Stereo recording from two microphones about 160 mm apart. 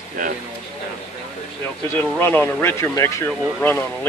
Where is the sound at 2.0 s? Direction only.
15° left (ahead or behind).